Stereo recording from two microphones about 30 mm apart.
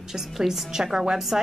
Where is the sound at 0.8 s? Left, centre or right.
Right.